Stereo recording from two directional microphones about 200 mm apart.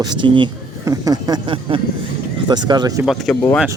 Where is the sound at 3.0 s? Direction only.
Centre (ahead or behind).